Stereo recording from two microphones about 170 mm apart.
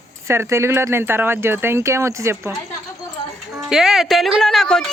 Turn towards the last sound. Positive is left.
turn(degrees=5)  # may be behind; listen again after turning